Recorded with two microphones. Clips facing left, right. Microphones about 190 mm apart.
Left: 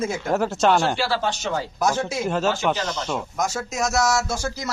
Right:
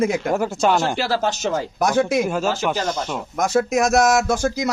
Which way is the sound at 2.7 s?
50° right (ahead or behind).